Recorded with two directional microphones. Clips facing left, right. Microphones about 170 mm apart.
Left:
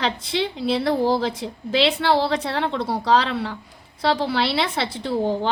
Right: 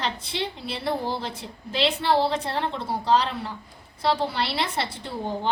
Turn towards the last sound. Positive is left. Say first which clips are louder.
# left 8 dB
turn(degrees=90)